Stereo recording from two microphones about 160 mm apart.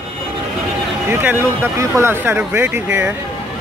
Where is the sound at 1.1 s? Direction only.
15° right (ahead or behind).